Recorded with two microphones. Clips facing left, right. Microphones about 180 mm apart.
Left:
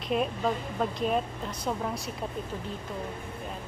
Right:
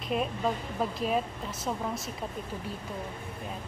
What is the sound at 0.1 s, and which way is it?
A woman's voice, centre (ahead or behind).